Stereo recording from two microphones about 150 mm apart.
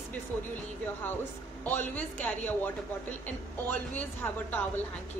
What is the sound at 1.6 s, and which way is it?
Speech, 10° left (ahead or behind).